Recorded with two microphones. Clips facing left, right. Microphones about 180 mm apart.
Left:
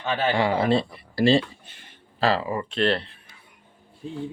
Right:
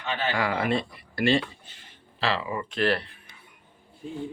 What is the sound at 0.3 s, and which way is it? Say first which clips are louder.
Speech: left 4 dB; 30° left (ahead or behind).